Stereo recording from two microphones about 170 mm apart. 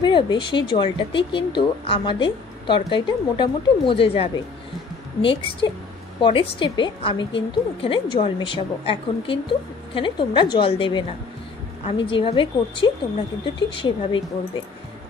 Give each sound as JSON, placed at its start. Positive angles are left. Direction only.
{"t": 0.0, "sound": "a woman's voice", "side_deg": 25}